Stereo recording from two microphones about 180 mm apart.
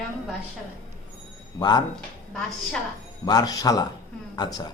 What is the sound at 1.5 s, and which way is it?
Speech, 20° left (ahead or behind).